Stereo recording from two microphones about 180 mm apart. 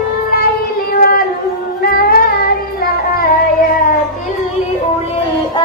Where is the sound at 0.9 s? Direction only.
55° left (ahead or behind).